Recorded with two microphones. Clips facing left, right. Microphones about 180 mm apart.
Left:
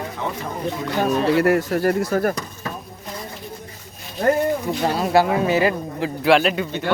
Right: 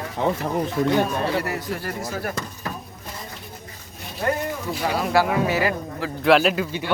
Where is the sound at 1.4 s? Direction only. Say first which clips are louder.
Left 10 dB; 50° left (ahead or behind).